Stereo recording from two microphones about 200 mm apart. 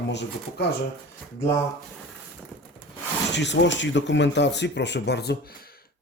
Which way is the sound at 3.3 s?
60° left (ahead or behind).